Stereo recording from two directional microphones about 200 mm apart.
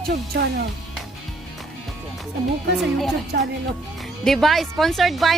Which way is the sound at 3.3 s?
55° right (ahead or behind).